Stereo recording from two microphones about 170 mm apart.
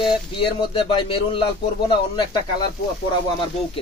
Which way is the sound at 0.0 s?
30° left (ahead or behind).